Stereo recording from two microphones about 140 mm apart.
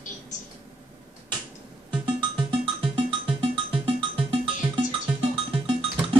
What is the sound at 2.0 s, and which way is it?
Music, 35° right (ahead or behind).